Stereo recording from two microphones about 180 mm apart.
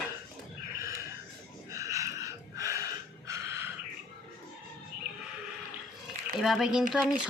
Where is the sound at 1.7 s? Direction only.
15° right (ahead or behind).